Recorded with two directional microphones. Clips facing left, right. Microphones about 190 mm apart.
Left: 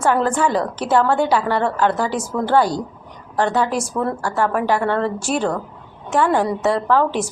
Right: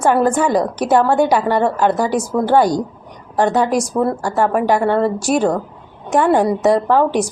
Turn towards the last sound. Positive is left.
turn(degrees=-15)  # may be behind; listen again after turning